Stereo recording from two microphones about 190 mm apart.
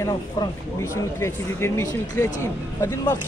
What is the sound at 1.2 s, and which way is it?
Speech, 15° left (ahead or behind).